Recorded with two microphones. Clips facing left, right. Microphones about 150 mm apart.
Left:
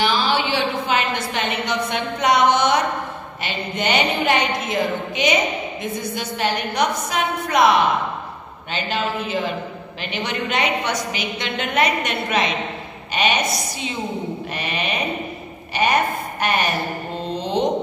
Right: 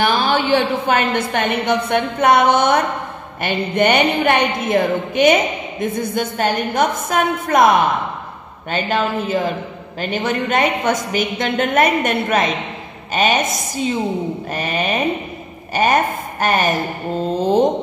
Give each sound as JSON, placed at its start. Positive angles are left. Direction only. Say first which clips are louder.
{"t": 0.0, "sound": "a woman's voice", "louder": "right 3 dB", "side_deg": -55}